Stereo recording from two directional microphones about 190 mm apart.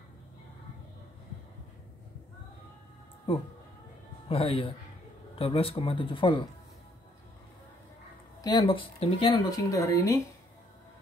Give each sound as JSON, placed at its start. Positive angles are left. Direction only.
{"t": 4.3, "sound": "speech", "side_deg": 30}
{"t": 8.4, "sound": "speech", "side_deg": 20}